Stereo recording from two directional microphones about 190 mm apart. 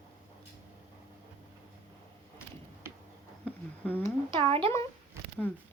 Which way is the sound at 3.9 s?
10° left (ahead or behind).